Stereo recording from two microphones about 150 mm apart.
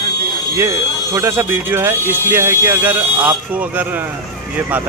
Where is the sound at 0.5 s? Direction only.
20° right (ahead or behind).